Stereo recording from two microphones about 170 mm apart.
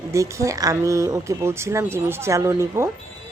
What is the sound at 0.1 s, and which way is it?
A woman's voice, 20° right (ahead or behind).